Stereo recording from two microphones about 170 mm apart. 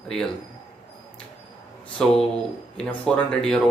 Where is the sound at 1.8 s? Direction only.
5° left (ahead or behind).